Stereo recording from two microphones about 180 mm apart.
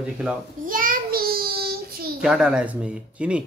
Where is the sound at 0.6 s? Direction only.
50° right (ahead or behind).